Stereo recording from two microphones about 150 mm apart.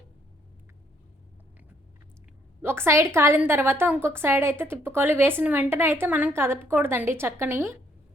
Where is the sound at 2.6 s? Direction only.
15° right (ahead or behind).